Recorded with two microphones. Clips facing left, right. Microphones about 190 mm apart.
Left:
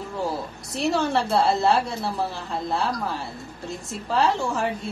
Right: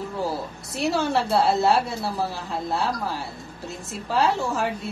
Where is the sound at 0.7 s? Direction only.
Centre (ahead or behind).